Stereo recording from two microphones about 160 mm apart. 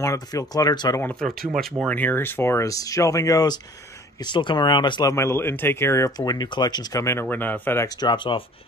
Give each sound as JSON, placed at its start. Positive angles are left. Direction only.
{"t": 0.0, "sound": "speech", "side_deg": 20}
{"t": 1.6, "sound": "speech", "side_deg": 5}
{"t": 5.1, "sound": "speech", "side_deg": 15}
{"t": 8.1, "sound": "speech", "side_deg": 30}